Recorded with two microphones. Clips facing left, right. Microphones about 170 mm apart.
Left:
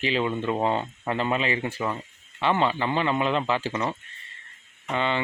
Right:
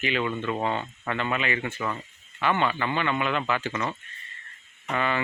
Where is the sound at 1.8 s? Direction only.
15° left (ahead or behind).